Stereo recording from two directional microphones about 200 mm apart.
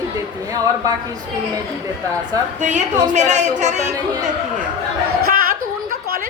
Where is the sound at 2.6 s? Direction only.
35° right (ahead or behind).